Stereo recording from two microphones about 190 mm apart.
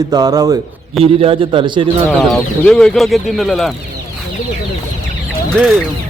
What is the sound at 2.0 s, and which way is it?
Speech, 5° left (ahead or behind).